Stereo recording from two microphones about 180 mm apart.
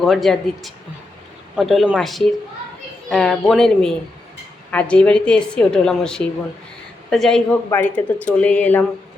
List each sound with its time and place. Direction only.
0.0 s a woman's voice: centre (ahead or behind)